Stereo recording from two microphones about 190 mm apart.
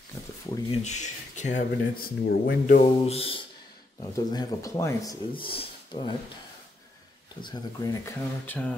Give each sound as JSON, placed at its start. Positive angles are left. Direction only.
{"t": 0.7, "sound": "speech", "side_deg": 40}
{"t": 2.7, "sound": "speech", "side_deg": 35}
{"t": 4.0, "sound": "speech", "side_deg": 20}
{"t": 5.3, "sound": "speech", "side_deg": 30}
{"t": 7.4, "sound": "speech", "side_deg": 20}